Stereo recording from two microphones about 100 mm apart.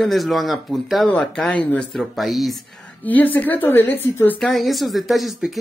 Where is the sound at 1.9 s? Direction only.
Centre (ahead or behind).